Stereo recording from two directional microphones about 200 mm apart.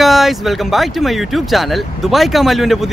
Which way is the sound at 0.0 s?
Centre (ahead or behind).